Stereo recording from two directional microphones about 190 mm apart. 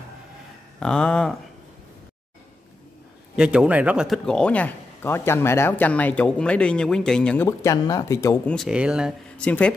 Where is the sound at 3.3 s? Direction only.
5° right (ahead or behind).